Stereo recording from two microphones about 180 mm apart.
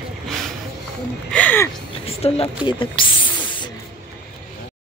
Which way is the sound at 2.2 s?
30° left (ahead or behind).